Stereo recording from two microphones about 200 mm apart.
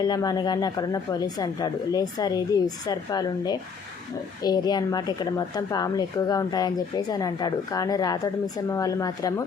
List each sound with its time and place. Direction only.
0.0 s speech: 20° left (ahead or behind)